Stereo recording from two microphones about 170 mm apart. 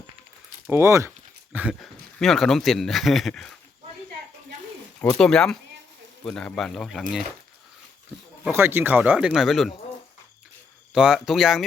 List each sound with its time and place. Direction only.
0.7 s speech: 15° right (ahead or behind)
2.1 s speech: centre (ahead or behind)
4.9 s speech: 5° left (ahead or behind)
8.5 s speech: 15° right (ahead or behind)
10.9 s speech: 5° right (ahead or behind)